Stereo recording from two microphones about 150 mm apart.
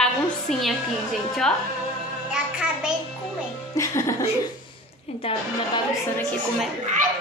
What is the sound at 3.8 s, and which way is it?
Music, 20° left (ahead or behind).